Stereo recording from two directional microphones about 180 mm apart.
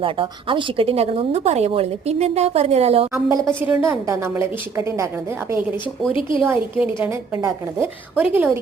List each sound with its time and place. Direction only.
0.0 s speech: 30° right (ahead or behind)
3.1 s a woman's voice: 15° right (ahead or behind)
6.1 s a woman's voice: 30° left (ahead or behind)
6.4 s a woman's voice: 10° right (ahead or behind)